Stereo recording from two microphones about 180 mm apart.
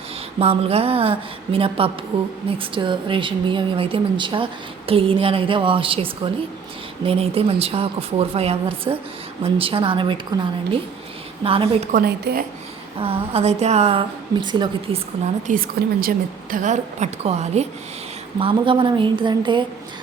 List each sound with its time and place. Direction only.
0.3 s a woman's voice: 35° right (ahead or behind)
11.9 s a woman's voice: 55° right (ahead or behind)
13.0 s a woman's voice: 35° right (ahead or behind)
15.4 s a woman's voice: 55° right (ahead or behind); by 19.6 s 25° right (ahead or behind)